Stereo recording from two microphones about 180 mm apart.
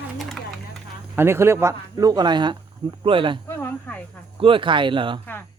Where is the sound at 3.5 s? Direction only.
10° left (ahead or behind).